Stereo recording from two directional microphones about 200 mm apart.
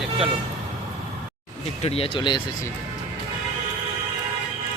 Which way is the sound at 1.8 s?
30° left (ahead or behind).